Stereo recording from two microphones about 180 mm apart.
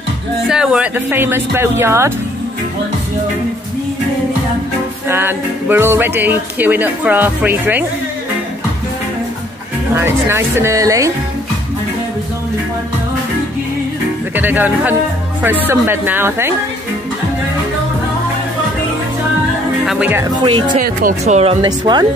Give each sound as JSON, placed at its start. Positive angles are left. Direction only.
{"t": 0.5, "sound": "speech", "side_deg": -5}
{"t": 5.0, "sound": "speech", "side_deg": -15}
{"t": 9.9, "sound": "speech", "side_deg": -15}
{"t": 14.3, "sound": "speech", "side_deg": -10}
{"t": 19.9, "sound": "speech", "side_deg": -10}
{"t": 20.4, "sound": "speech", "side_deg": -25}
{"t": 21.2, "sound": "speech", "side_deg": -35}
{"t": 21.5, "sound": "speech", "side_deg": -25}